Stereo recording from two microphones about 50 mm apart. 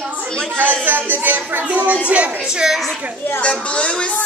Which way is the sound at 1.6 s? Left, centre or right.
Right.